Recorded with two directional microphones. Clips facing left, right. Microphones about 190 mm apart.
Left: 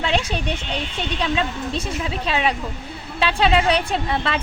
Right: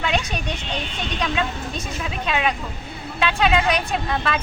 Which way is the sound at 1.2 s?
30° left (ahead or behind).